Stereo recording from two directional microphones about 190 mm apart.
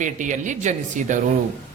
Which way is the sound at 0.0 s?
40° right (ahead or behind).